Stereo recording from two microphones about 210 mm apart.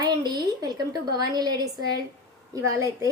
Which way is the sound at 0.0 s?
20° right (ahead or behind).